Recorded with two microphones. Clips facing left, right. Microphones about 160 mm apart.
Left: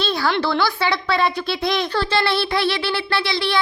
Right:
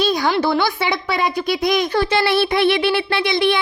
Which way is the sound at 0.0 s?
15° right (ahead or behind).